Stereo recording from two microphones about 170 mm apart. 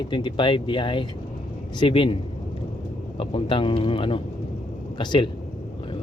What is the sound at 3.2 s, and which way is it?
Speech, 30° left (ahead or behind).